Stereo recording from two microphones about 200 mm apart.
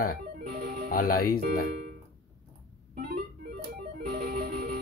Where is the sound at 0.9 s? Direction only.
45° left (ahead or behind).